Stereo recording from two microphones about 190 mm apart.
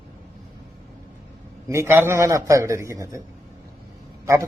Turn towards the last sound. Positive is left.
turn(degrees=-15)  # may be behind; listen again after turning